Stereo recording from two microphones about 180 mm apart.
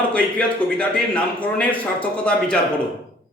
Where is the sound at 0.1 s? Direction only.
5° left (ahead or behind).